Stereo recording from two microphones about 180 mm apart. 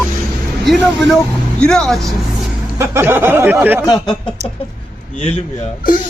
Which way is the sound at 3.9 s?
25° left (ahead or behind).